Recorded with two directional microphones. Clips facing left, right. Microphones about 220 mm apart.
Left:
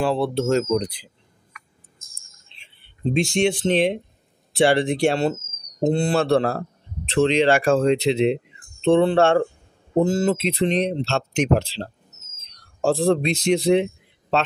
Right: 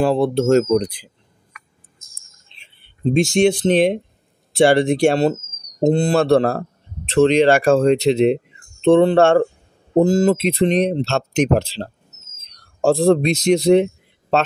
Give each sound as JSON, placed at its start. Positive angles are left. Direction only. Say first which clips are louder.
{"t": 0.0, "sound": "speech", "louder": "right 5 dB", "side_deg": -45}
{"t": 3.2, "sound": "speech", "louder": "right 5 dB", "side_deg": -40}